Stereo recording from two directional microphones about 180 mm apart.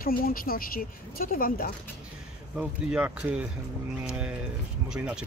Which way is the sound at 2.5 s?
5° right (ahead or behind).